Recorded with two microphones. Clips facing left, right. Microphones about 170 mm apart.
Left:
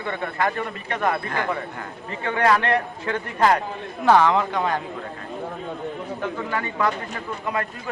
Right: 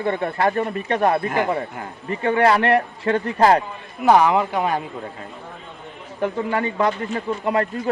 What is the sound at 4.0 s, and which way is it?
Speech, 15° right (ahead or behind).